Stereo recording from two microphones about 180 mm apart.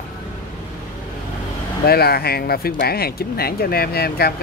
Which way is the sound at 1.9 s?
60° left (ahead or behind).